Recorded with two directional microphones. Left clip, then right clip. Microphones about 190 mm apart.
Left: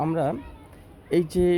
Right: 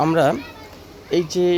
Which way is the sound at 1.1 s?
30° left (ahead or behind).